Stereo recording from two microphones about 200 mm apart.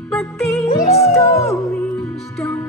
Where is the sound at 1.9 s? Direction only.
Centre (ahead or behind).